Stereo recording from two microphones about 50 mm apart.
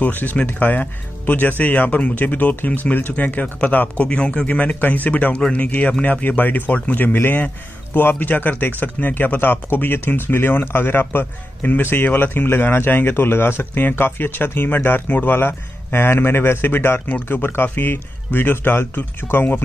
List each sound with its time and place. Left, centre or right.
0.0 s speech: left
6.2 s speech: left